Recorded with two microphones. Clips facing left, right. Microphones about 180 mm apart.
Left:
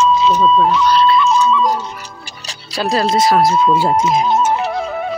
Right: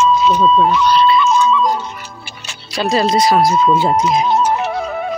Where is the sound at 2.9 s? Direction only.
Centre (ahead or behind).